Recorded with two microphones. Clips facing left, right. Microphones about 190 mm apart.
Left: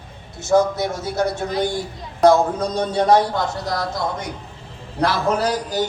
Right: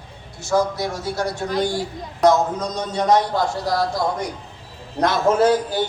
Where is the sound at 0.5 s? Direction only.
20° left (ahead or behind).